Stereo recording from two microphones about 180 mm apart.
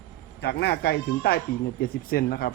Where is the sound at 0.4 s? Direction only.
65° left (ahead or behind).